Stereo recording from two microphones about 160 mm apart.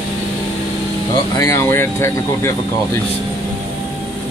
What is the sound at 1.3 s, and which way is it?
Speech, 20° left (ahead or behind).